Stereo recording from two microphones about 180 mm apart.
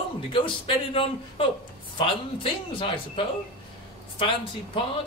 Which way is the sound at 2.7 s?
30° left (ahead or behind).